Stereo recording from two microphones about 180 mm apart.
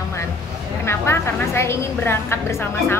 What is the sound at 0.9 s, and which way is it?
A woman's voice, 15° left (ahead or behind).